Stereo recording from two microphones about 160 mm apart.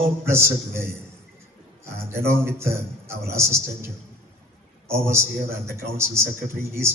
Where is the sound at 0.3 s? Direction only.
15° right (ahead or behind).